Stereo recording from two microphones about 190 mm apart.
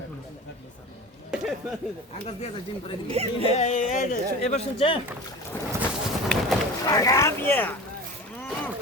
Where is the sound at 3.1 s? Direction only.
30° right (ahead or behind).